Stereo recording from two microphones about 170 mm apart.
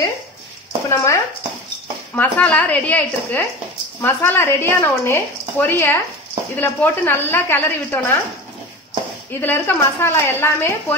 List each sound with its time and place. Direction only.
0.8 s speech: 20° left (ahead or behind)
9.4 s speech: 15° left (ahead or behind)